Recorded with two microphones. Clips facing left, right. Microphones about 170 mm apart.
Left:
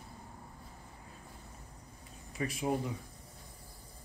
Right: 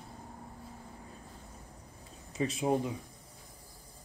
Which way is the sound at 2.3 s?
25° right (ahead or behind).